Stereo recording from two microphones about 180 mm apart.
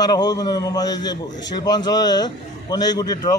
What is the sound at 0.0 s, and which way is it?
A man's voice, 20° left (ahead or behind).